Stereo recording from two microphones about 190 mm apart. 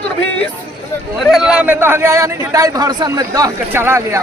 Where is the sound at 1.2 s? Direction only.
Centre (ahead or behind).